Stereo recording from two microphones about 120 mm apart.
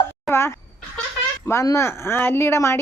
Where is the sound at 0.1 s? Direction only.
20° left (ahead or behind).